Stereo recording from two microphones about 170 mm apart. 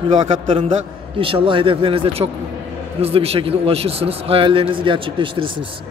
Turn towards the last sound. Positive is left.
turn(degrees=-30)  # may be behind; listen again after turning